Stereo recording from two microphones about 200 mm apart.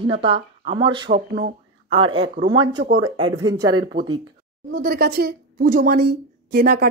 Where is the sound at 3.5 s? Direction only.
20° right (ahead or behind).